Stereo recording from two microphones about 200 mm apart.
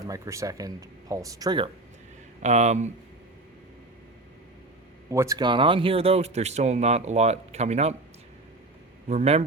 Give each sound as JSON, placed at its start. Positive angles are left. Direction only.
{"t": 0.1, "sound": "speech", "side_deg": -15}
{"t": 2.4, "sound": "speech", "side_deg": -35}
{"t": 5.0, "sound": "speech", "side_deg": -15}
{"t": 9.0, "sound": "speech", "side_deg": -30}